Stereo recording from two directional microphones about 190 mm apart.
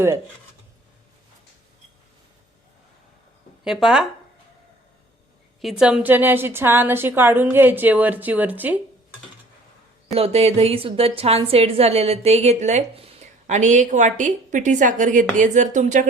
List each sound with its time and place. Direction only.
3.6 s speech: centre (ahead or behind)
5.8 s a woman's voice: 5° right (ahead or behind)
10.2 s a woman's voice: 30° right (ahead or behind)